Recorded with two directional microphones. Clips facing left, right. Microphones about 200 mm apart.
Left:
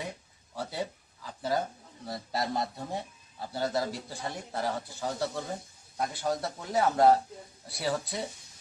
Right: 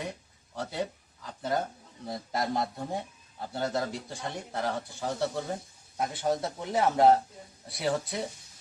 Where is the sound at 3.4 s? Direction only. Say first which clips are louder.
Even; centre (ahead or behind).